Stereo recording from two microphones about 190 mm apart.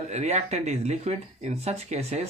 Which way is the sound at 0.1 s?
35° right (ahead or behind).